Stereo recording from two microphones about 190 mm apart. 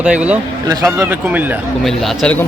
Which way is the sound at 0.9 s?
10° right (ahead or behind).